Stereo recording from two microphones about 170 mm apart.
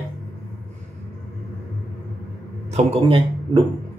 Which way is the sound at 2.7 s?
30° right (ahead or behind).